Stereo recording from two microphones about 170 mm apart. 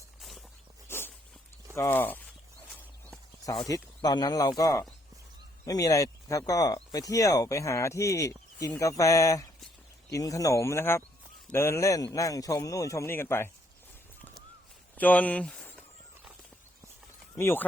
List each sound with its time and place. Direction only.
0.2 s walk: centre (ahead or behind)
0.9 s dog: 15° left (ahead or behind)
1.7 s speech: 15° left (ahead or behind)
3.4 s a man's voice: 20° left (ahead or behind)
14.9 s speech: 10° left (ahead or behind)
17.3 s speech: 15° left (ahead or behind)